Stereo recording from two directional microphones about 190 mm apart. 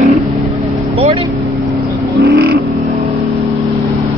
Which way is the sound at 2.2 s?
60° right (ahead or behind).